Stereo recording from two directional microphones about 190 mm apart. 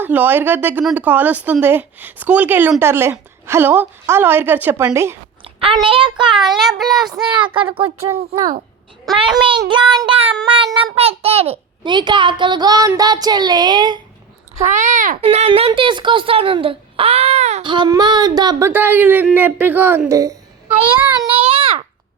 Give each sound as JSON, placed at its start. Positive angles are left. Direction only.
{"t": 0.0, "sound": "speech", "side_deg": -10}
{"t": 5.5, "sound": "a child's voice", "side_deg": -25}
{"t": 6.3, "sound": "speech", "side_deg": 0}
{"t": 7.3, "sound": "a child's voice", "side_deg": -25}
{"t": 8.4, "sound": "a child's voice", "side_deg": -40}
{"t": 9.3, "sound": "a child's voice", "side_deg": -25}
{"t": 14.6, "sound": "a child's voice", "side_deg": -40}
{"t": 15.2, "sound": "a child's voice", "side_deg": -30}
{"t": 17.6, "sound": "a child's voice", "side_deg": -25}
{"t": 18.7, "sound": "speech", "side_deg": -10}
{"t": 21.2, "sound": "a sound", "side_deg": -30}